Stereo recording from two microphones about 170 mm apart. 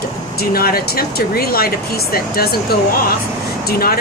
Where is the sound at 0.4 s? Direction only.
60° left (ahead or behind).